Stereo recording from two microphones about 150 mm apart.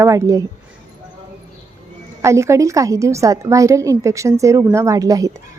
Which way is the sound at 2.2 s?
20° right (ahead or behind).